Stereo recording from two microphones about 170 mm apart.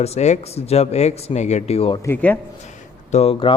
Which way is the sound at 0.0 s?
40° left (ahead or behind).